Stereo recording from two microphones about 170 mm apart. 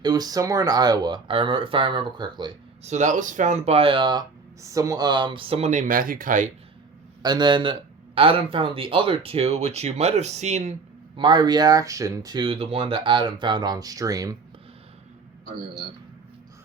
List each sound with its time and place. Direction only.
0.0 s speech: 20° right (ahead or behind)
2.8 s speech: 45° right (ahead or behind)
7.2 s speech: 25° right (ahead or behind); by 10.8 s 45° right (ahead or behind)
11.2 s speech: 25° right (ahead or behind)